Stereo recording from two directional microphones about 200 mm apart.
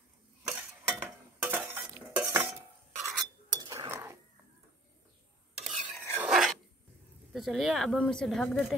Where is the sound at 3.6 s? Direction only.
20° right (ahead or behind).